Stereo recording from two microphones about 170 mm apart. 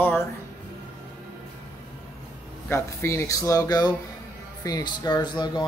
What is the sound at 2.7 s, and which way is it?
Speech, 15° left (ahead or behind).